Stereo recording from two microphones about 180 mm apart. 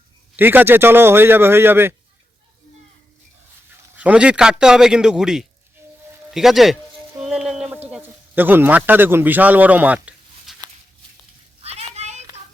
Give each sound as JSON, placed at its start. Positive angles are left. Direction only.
{"t": 0.3, "sound": "a man's voice", "side_deg": -10}
{"t": 3.9, "sound": "a man's voice", "side_deg": -5}
{"t": 7.2, "sound": "a sound", "side_deg": -5}
{"t": 11.6, "sound": "children playing", "side_deg": -35}